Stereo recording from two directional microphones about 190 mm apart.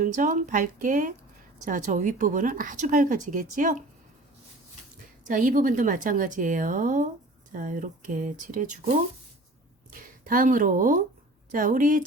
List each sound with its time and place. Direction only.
0.0 s a woman's voice: 45° right (ahead or behind)
5.3 s a woman's voice: 45° right (ahead or behind)